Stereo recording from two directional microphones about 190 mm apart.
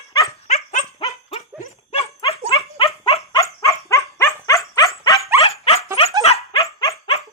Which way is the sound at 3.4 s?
15° left (ahead or behind).